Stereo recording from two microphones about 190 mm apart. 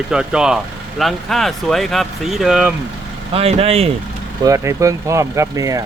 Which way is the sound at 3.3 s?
30° right (ahead or behind).